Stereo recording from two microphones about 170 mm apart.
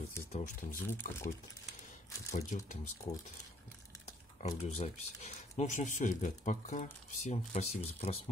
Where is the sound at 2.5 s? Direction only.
45° left (ahead or behind).